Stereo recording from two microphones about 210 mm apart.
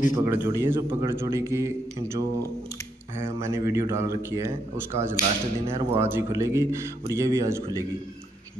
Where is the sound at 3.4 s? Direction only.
10° right (ahead or behind).